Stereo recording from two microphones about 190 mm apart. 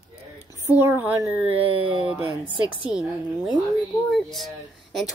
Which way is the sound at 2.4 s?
25° left (ahead or behind).